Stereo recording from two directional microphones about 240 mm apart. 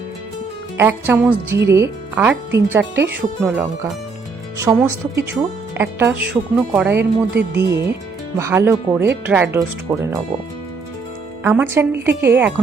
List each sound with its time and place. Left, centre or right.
0.8 s speech: centre
7.0 s speech: right
7.7 s speech: centre
11.4 s speech: centre